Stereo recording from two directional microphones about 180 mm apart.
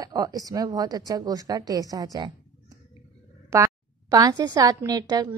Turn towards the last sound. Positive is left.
turn(degrees=-20)  # may be behind; listen again after turning